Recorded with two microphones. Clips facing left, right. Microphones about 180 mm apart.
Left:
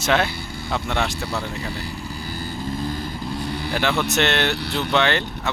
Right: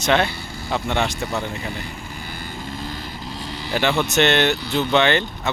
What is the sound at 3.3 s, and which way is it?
Vehicle, 55° left (ahead or behind).